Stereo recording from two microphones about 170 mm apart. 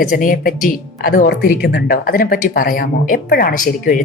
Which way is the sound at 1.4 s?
65° left (ahead or behind).